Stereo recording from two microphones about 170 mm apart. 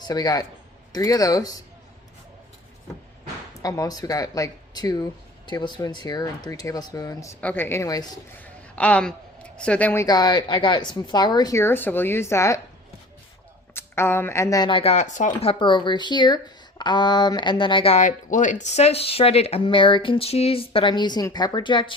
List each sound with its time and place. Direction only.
0.1 s speech: 20° left (ahead or behind)
3.6 s a woman's voice: 20° left (ahead or behind)
8.4 s a woman's voice: 10° left (ahead or behind)
13.7 s speech: 15° left (ahead or behind); by 15.3 s 45° left (ahead or behind)
15.3 s speech: 30° left (ahead or behind)